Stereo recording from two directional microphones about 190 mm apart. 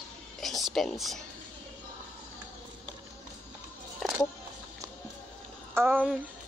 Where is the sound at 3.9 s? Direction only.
Centre (ahead or behind).